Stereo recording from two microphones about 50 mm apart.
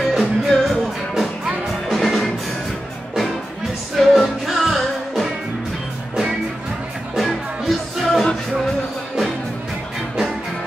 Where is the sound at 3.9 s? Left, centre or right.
Centre.